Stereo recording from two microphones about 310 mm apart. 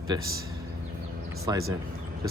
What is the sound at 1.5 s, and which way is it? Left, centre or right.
Speech, centre.